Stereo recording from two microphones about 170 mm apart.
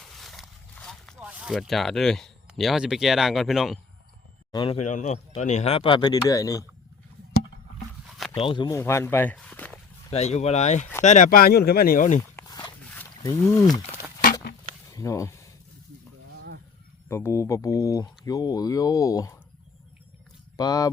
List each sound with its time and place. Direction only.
0.0 s a sound: centre (ahead or behind)
1.2 s speech: 10° right (ahead or behind)
4.5 s speech: 30° left (ahead or behind)
4.9 s speech: 45° left (ahead or behind); by 6.7 s 20° left (ahead or behind)
8.4 s speech: 30° left (ahead or behind)
8.8 s speech: 15° left (ahead or behind)
10.1 s speech: 40° left (ahead or behind)
12.4 s a sound: 20° left (ahead or behind)
13.2 s speech: 15° left (ahead or behind)
14.8 s a sound: 20° left (ahead or behind)
17.1 s speech: 15° left (ahead or behind)
20.6 s speech: 20° left (ahead or behind)